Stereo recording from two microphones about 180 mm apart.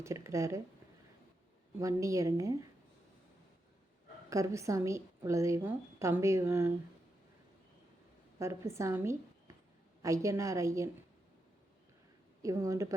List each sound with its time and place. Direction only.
0.0 s a woman's voice: 15° right (ahead or behind)
1.8 s a woman's voice: 15° right (ahead or behind)
4.3 s a woman's voice: 15° right (ahead or behind)
8.4 s a woman's voice: 15° right (ahead or behind)
12.4 s a woman's voice: 20° right (ahead or behind)